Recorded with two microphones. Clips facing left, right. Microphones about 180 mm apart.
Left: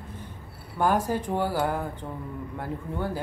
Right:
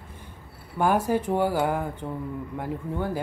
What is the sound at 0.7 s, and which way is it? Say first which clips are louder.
Speech: right 2 dB; 10° right (ahead or behind).